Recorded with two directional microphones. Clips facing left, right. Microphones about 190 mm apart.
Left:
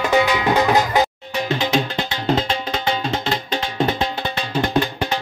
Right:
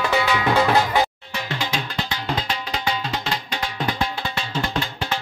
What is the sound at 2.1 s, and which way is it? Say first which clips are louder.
Tabla: left 6 dB; 25° left (ahead or behind).